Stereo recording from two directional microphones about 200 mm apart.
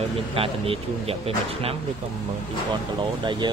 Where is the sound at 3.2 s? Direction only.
25° right (ahead or behind).